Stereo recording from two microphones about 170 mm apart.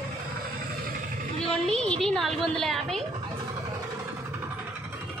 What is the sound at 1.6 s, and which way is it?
A woman's voice, 5° left (ahead or behind).